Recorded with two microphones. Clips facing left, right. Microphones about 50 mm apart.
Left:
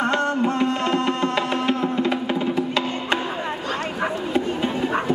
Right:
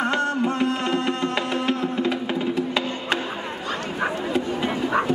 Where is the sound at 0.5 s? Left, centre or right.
Centre.